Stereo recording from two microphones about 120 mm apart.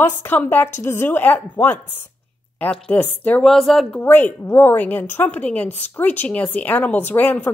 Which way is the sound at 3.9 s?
15° left (ahead or behind).